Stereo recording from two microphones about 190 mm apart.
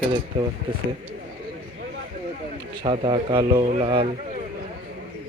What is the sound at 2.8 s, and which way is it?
A man's voice, 25° right (ahead or behind).